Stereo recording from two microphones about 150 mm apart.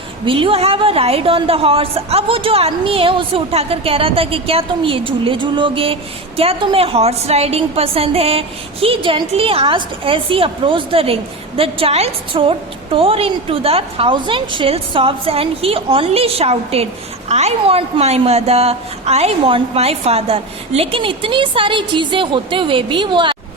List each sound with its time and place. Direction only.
0.3 s a woman's voice: 35° right (ahead or behind)